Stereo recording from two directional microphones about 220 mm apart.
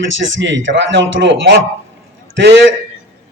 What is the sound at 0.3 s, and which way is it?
A man's voice, 55° right (ahead or behind).